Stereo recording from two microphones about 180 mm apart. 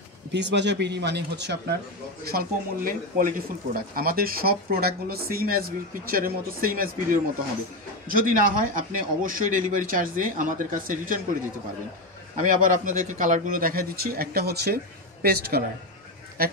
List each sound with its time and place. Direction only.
0.3 s speech: 75° right (ahead or behind)
2.3 s speech: 50° right (ahead or behind)
12.4 s speech: 50° right (ahead or behind)